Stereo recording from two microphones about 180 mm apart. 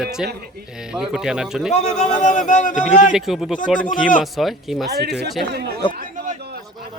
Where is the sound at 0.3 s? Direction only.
60° right (ahead or behind).